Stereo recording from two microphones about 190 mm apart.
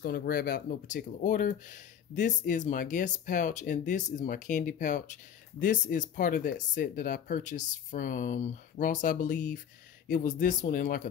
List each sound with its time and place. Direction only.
0.0 s speech: 50° left (ahead or behind)